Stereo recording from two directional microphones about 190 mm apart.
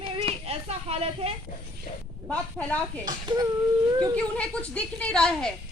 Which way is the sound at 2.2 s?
5° left (ahead or behind).